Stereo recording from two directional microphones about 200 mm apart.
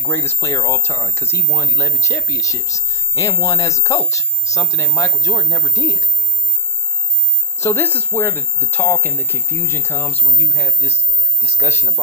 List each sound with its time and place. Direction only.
0.0 s speech: 10° left (ahead or behind)
7.6 s speech: 10° left (ahead or behind)